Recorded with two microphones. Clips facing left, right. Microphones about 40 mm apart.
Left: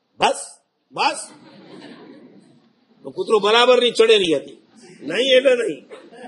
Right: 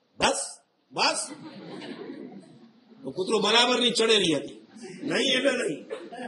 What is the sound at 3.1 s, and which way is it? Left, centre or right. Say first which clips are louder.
A man's voice: left 7 dB; left.